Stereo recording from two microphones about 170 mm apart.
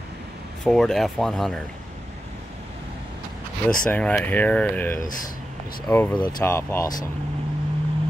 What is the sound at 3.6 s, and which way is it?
Speech, 10° left (ahead or behind).